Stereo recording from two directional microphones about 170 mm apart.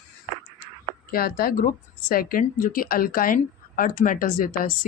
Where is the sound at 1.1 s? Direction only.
60° left (ahead or behind).